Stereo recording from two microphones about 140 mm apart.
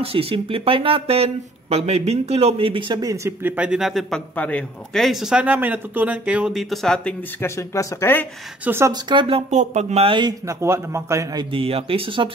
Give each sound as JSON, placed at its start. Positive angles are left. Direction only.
{"t": 0.0, "sound": "speech", "side_deg": -40}
{"t": 3.4, "sound": "speech", "side_deg": -10}
{"t": 4.4, "sound": "speech", "side_deg": 10}
{"t": 7.3, "sound": "speech", "side_deg": 20}
{"t": 8.6, "sound": "speech", "side_deg": -15}
{"t": 8.9, "sound": "speech", "side_deg": -35}
{"t": 9.5, "sound": "speech", "side_deg": -55}
{"t": 10.4, "sound": "a man's voice", "side_deg": -20}
{"t": 11.5, "sound": "speech", "side_deg": -40}